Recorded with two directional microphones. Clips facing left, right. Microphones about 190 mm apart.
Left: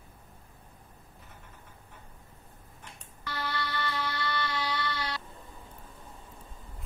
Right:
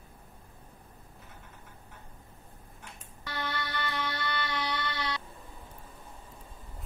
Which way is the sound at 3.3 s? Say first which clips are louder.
Left 1 dB; 20° right (ahead or behind).